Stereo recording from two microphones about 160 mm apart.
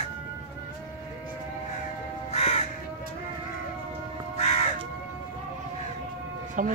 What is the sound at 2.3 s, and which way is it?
Crow, 40° left (ahead or behind).